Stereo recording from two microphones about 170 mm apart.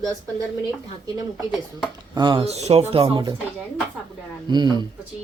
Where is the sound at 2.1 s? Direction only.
30° right (ahead or behind).